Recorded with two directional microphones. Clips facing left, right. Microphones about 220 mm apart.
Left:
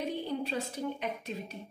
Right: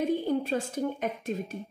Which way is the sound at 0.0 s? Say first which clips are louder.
Right 7 dB; 45° right (ahead or behind).